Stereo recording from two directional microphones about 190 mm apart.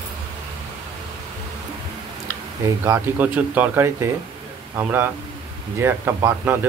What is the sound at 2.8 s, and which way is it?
Speech, 10° right (ahead or behind).